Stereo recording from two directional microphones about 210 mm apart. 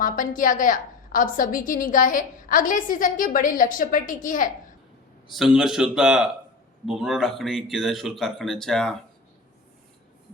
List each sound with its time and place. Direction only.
0.0 s a woman's voice: 40° left (ahead or behind)
5.4 s speech: centre (ahead or behind)